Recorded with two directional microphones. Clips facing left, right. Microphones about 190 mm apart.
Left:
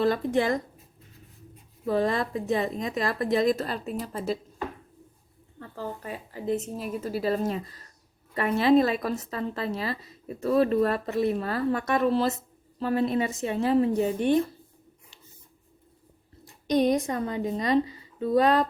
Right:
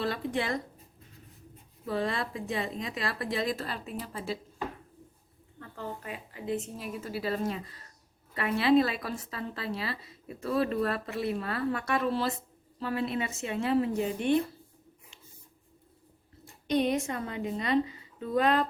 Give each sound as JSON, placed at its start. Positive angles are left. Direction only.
{"t": 0.0, "sound": "a woman's voice", "side_deg": 45}
{"t": 1.9, "sound": "a woman's voice", "side_deg": 45}
{"t": 5.5, "sound": "a woman's voice", "side_deg": 35}
{"t": 16.6, "sound": "a woman's voice", "side_deg": 40}